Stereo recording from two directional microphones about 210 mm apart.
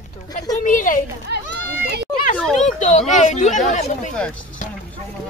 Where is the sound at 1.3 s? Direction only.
50° right (ahead or behind).